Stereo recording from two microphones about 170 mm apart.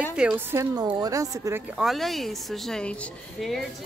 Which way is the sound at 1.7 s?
Centre (ahead or behind).